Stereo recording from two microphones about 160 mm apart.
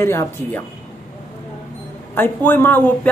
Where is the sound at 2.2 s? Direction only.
10° left (ahead or behind).